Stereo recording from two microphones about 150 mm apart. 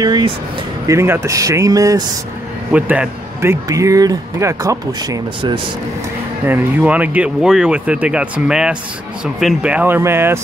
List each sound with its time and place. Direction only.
0.0 s speech: 30° right (ahead or behind)
0.8 s speech: 15° right (ahead or behind)
2.7 s speech: 10° right (ahead or behind)
6.4 s speech: 10° right (ahead or behind)